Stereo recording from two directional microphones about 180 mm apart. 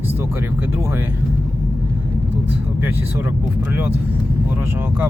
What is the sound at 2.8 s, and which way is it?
Speech, 10° right (ahead or behind).